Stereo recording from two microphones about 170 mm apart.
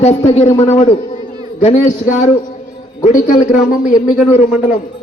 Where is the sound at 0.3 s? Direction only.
40° left (ahead or behind).